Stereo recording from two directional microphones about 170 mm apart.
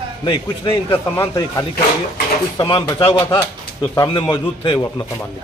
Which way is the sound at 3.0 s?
15° left (ahead or behind).